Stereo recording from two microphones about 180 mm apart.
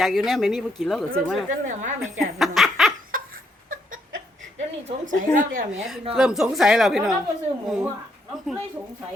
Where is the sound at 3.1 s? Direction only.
50° right (ahead or behind).